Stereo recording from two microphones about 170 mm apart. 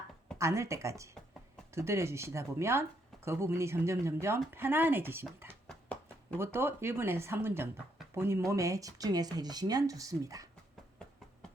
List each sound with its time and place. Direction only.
0.3 s speech: 15° right (ahead or behind)
5.6 s a sound: 5° left (ahead or behind)
6.4 s speech: 15° right (ahead or behind)